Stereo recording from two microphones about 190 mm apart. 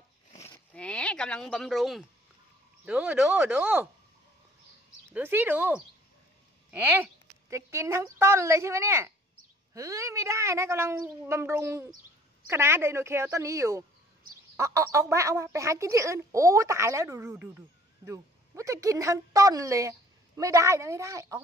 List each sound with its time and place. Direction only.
0.7 s speech: 5° left (ahead or behind); by 3.9 s 10° right (ahead or behind)
5.1 s a woman's voice: 10° right (ahead or behind)